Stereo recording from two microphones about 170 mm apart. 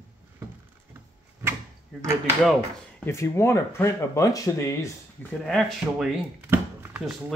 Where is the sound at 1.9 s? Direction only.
Centre (ahead or behind).